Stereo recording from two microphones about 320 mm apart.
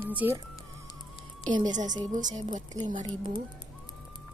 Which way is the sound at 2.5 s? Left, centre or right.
Right.